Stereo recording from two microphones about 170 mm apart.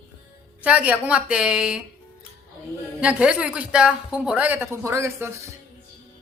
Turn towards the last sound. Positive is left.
turn(degrees=-15)  # may be behind; listen again after turning